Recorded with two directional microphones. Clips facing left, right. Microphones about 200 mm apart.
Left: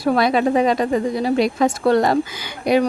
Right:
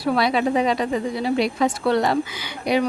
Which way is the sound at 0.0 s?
45° left (ahead or behind).